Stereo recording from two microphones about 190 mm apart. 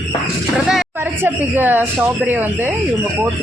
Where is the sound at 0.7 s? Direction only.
5° right (ahead or behind).